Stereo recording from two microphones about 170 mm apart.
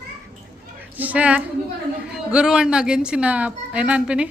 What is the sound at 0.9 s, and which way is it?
A woman's voice, 10° right (ahead or behind).